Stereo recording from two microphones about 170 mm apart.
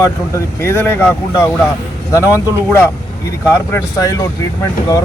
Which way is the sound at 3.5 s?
15° left (ahead or behind).